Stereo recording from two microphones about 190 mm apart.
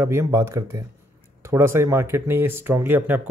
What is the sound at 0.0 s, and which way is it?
Speech, 15° right (ahead or behind).